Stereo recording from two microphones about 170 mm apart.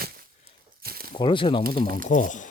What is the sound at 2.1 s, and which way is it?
Speech, 45° left (ahead or behind).